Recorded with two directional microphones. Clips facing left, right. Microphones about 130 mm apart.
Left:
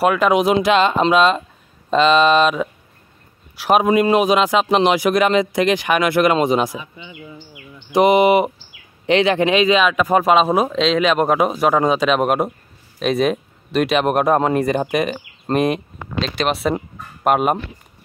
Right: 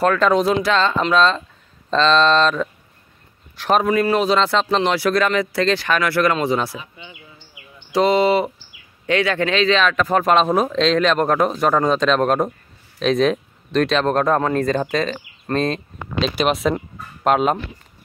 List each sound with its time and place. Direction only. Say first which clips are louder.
0.0 s speech: left 1 dB; 10° left (ahead or behind)
3.8 s speech: left 3 dB; 20° left (ahead or behind)
7.9 s speech: left 3 dB; 15° left (ahead or behind)
16.2 s speech: right 1 dB; centre (ahead or behind)
16.7 s chicken: left 2 dB; 10° left (ahead or behind)